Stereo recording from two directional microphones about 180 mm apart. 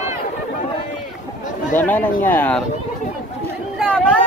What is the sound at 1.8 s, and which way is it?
Speech, 10° left (ahead or behind).